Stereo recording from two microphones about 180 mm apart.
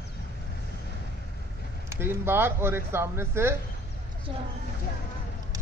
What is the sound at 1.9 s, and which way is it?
Speech, 15° right (ahead or behind).